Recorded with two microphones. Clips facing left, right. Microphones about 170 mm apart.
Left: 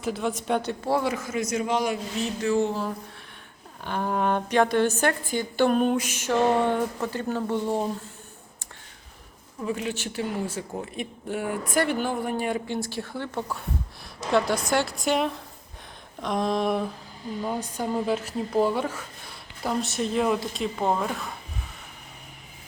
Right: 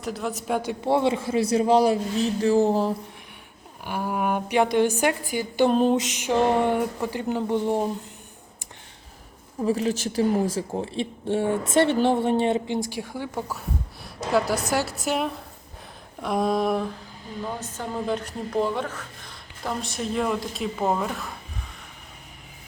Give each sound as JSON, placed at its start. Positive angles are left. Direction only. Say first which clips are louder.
{"t": 0.0, "sound": "speech", "louder": "left 2 dB", "side_deg": 0}
{"t": 0.9, "sound": "speech", "louder": "right 5 dB", "side_deg": -25}
{"t": 3.8, "sound": "speech", "louder": "even", "side_deg": -10}
{"t": 5.7, "sound": "speech", "louder": "right 2 dB", "side_deg": -25}
{"t": 9.6, "sound": "a woman's voice", "louder": "right 6 dB", "side_deg": -35}
{"t": 17.4, "sound": "speech", "louder": "left 3 dB", "side_deg": 15}